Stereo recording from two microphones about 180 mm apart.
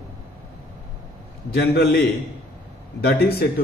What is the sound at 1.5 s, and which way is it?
Speech, 60° left (ahead or behind).